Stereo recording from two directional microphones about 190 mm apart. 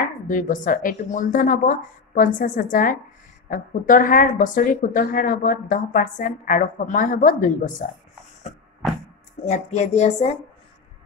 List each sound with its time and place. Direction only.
0.3 s a woman's voice: 45° left (ahead or behind)
9.4 s speech: 40° left (ahead or behind)